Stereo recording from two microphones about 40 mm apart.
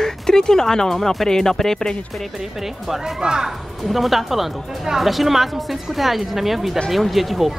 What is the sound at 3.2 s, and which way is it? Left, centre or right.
Speech, centre.